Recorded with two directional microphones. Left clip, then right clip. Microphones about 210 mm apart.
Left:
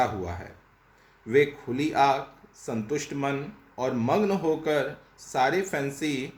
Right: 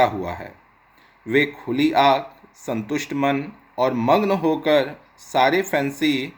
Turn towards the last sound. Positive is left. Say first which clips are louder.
# right 8 dB
turn(degrees=-40)  # may be behind; listen again after turning